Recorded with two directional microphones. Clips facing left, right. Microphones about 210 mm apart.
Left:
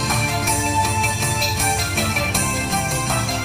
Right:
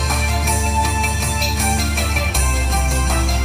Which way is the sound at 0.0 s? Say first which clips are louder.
Left 1 dB; centre (ahead or behind).